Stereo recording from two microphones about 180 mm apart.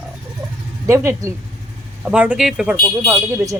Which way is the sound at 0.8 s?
15° right (ahead or behind).